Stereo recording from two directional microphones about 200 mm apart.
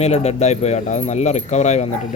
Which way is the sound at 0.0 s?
35° left (ahead or behind).